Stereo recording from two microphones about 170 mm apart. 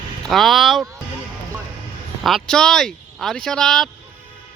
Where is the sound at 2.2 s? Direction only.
Centre (ahead or behind).